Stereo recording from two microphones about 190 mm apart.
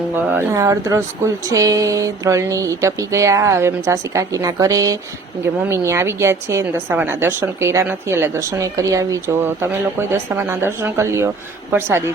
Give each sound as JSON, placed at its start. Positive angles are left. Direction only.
{"t": 0.3, "sound": "a woman's voice", "side_deg": -15}